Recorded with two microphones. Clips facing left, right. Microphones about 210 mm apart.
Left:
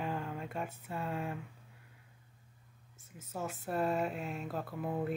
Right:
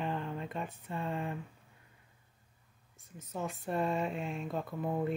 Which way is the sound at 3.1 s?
5° left (ahead or behind).